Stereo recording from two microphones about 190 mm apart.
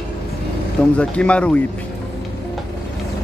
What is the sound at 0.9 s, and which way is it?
Speech, 5° left (ahead or behind).